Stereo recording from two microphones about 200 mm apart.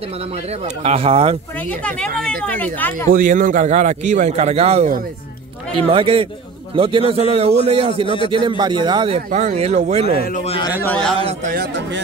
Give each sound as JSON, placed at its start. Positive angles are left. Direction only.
{"t": 0.5, "sound": "a man's voice", "side_deg": -30}
{"t": 1.6, "sound": "speech", "side_deg": 5}
{"t": 3.1, "sound": "a man's voice", "side_deg": -45}
{"t": 9.3, "sound": "a man's voice", "side_deg": -40}
{"t": 10.1, "sound": "a man's voice", "side_deg": 45}
{"t": 10.4, "sound": "a man's voice", "side_deg": 30}
{"t": 10.8, "sound": "a man's voice", "side_deg": 5}
{"t": 11.1, "sound": "a man's voice", "side_deg": -30}
{"t": 11.5, "sound": "speech", "side_deg": -55}